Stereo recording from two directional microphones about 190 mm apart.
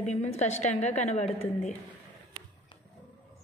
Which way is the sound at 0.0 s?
35° left (ahead or behind).